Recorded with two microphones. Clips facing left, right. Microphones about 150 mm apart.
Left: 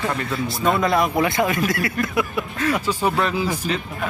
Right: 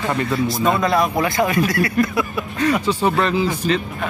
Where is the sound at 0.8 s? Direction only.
20° left (ahead or behind).